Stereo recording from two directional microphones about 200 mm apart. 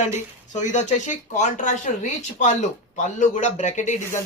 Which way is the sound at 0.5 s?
35° left (ahead or behind).